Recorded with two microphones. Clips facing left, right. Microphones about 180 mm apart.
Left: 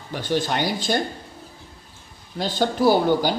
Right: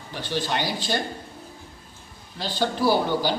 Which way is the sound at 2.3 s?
50° left (ahead or behind).